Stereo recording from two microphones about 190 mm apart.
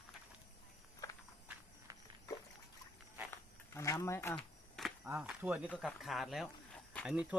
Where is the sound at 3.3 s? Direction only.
15° left (ahead or behind).